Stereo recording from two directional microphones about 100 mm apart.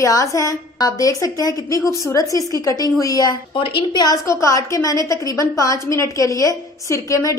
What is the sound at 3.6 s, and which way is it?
Speech, 55° left (ahead or behind).